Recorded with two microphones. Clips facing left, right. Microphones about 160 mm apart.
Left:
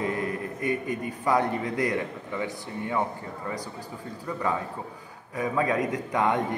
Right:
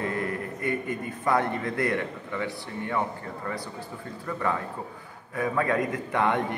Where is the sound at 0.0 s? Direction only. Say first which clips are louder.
Left 1 dB; 15° left (ahead or behind).